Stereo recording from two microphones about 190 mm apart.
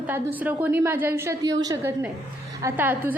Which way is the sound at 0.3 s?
10° right (ahead or behind).